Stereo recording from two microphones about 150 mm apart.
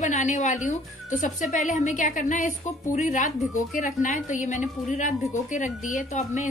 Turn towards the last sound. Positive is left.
turn(degrees=50)  # may be behind; listen again after turning